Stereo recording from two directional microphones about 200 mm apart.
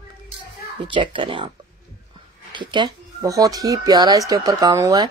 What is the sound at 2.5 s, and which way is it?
Speech, 20° right (ahead or behind).